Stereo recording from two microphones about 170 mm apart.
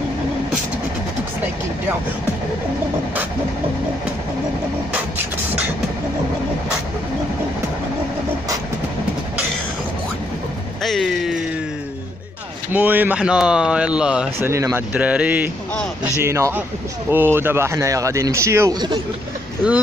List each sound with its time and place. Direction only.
10.8 s vehicle: centre (ahead or behind)
12.7 s speech: 10° right (ahead or behind)